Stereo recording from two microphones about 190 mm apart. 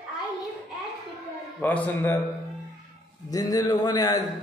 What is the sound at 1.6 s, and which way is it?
Speech, 10° left (ahead or behind).